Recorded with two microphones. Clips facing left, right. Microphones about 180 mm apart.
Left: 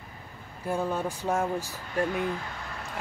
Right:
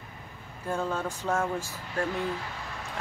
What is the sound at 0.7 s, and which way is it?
Speech, 10° left (ahead or behind).